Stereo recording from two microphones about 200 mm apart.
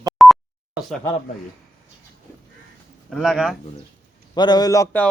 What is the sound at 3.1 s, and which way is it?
Speech, centre (ahead or behind).